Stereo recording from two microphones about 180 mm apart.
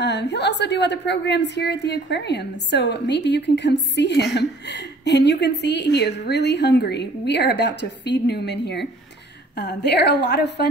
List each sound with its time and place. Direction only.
0.0 s a woman's voice: 70° left (ahead or behind)